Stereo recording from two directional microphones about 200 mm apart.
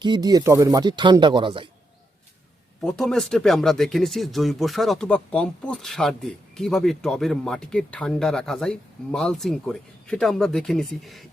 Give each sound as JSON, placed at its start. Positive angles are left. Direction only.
{"t": 0.0, "sound": "speech", "side_deg": -20}
{"t": 2.8, "sound": "speech", "side_deg": 5}